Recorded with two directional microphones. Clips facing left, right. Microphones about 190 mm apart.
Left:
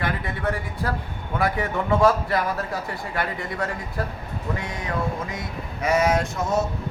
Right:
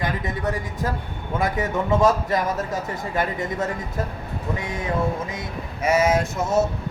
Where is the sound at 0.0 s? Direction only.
20° right (ahead or behind).